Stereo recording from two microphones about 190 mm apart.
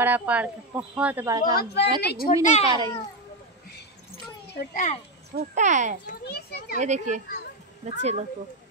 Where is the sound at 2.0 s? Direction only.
55° left (ahead or behind).